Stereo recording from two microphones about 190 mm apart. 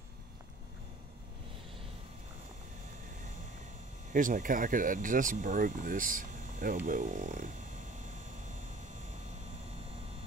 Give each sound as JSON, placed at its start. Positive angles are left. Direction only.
{"t": 4.1, "sound": "speech", "side_deg": -45}